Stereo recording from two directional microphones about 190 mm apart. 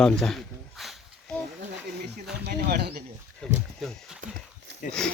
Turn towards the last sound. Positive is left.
turn(degrees=5)  # may be behind; listen again after turning